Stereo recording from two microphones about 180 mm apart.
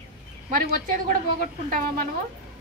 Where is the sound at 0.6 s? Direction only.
50° right (ahead or behind).